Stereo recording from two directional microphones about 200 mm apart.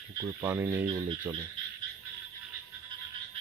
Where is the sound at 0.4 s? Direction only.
10° right (ahead or behind).